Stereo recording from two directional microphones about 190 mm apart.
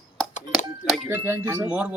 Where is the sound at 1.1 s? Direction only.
10° right (ahead or behind).